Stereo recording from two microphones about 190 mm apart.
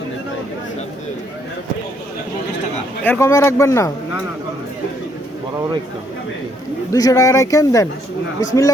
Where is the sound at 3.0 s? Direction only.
10° left (ahead or behind).